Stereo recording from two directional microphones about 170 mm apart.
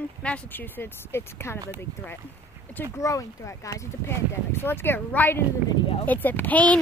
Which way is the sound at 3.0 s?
20° left (ahead or behind).